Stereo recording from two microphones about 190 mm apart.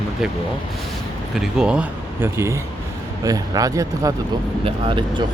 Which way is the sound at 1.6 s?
5° right (ahead or behind).